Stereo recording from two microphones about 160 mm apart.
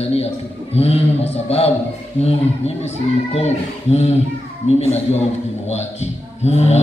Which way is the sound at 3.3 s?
40° left (ahead or behind).